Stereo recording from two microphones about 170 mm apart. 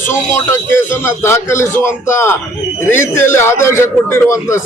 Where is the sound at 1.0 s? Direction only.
15° left (ahead or behind).